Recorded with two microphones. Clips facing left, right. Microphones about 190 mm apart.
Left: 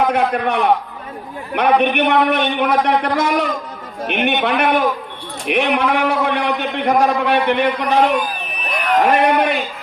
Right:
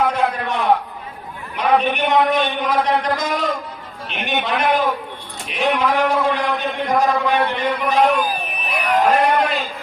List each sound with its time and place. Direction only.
0.1 s a man's voice: 65° left (ahead or behind)
8.0 s crowd: 10° right (ahead or behind)
9.0 s a man's voice: 65° left (ahead or behind)